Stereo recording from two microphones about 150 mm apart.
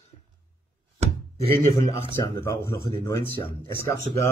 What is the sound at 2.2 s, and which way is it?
Speech, 20° left (ahead or behind).